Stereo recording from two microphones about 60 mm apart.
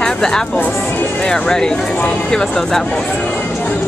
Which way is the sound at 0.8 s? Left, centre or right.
Left.